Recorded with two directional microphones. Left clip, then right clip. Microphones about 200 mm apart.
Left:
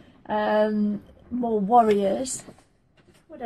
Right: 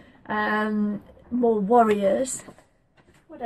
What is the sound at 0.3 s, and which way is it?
Speech, 20° right (ahead or behind).